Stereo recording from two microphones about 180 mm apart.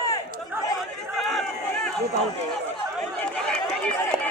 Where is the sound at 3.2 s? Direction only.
5° left (ahead or behind).